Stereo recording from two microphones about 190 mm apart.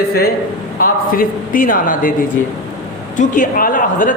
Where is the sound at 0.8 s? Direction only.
50° left (ahead or behind).